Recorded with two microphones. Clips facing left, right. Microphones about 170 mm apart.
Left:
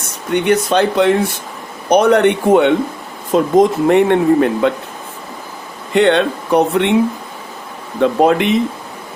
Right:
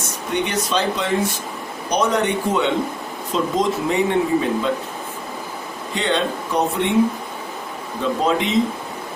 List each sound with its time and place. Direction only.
0.3 s speech: 60° left (ahead or behind)
5.9 s speech: 65° left (ahead or behind)
8.0 s speech: 65° left (ahead or behind)